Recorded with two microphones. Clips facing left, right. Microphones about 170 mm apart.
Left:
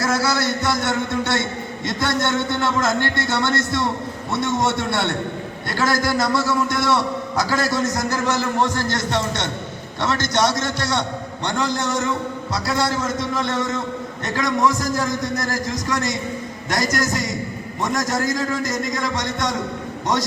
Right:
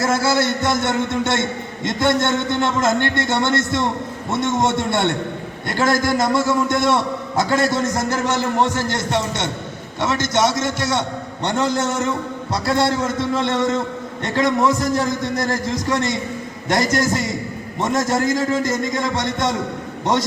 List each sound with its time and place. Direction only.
0.0 s a man's voice: 25° right (ahead or behind)
9.0 s a man's voice: 10° right (ahead or behind)
11.4 s a man's voice: 25° right (ahead or behind)